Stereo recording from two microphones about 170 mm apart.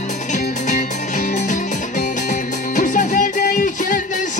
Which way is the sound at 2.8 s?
50° left (ahead or behind).